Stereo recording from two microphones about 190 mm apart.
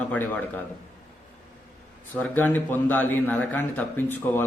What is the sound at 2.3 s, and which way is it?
A man's voice, 10° left (ahead or behind).